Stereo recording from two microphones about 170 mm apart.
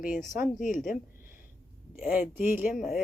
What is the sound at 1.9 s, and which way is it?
Speech, 5° right (ahead or behind).